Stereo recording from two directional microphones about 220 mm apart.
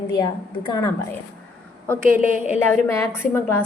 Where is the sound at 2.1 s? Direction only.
40° right (ahead or behind).